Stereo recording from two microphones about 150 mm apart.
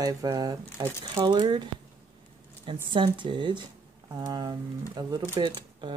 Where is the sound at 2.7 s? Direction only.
30° right (ahead or behind).